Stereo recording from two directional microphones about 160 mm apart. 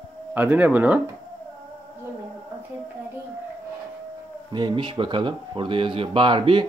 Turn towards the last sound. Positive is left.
turn(degrees=-30)  # may be behind; listen again after turning